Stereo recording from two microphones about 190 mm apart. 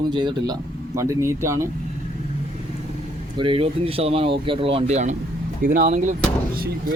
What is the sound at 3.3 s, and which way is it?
Speech, 30° right (ahead or behind).